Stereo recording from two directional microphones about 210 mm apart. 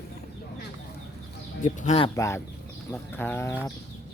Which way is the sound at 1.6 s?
35° left (ahead or behind).